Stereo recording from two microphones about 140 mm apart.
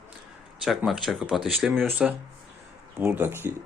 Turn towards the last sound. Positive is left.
turn(degrees=-15)  # may be behind; listen again after turning